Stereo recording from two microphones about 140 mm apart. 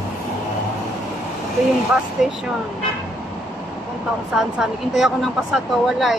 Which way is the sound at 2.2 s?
5° right (ahead or behind).